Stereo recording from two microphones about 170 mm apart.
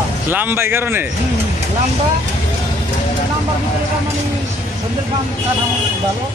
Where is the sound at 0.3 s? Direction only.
10° right (ahead or behind).